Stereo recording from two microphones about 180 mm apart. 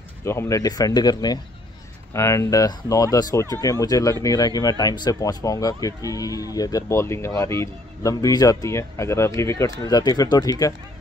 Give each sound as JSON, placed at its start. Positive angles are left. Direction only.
{"t": 0.2, "sound": "speech", "side_deg": 15}